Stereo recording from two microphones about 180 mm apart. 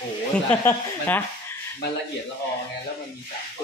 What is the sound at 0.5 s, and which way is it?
Speech, 10° left (ahead or behind).